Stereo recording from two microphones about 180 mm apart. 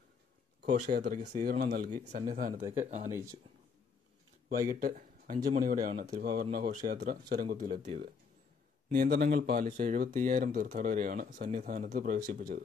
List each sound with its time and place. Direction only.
0.6 s speech: 55° right (ahead or behind); by 3.1 s 40° right (ahead or behind)
3.1 s speech: 15° right (ahead or behind)
4.6 s speech: 50° right (ahead or behind)
8.9 s speech: 55° right (ahead or behind)